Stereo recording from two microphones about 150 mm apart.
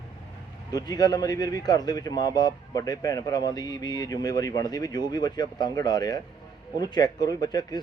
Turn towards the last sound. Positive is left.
turn(degrees=25)  # may be behind; listen again after turning